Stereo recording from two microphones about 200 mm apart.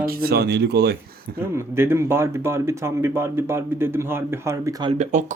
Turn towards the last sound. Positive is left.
turn(degrees=-35)  # may be behind; listen again after turning